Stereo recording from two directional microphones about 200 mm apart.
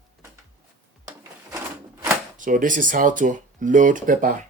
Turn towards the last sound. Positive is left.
turn(degrees=-45)  # may be behind; listen again after turning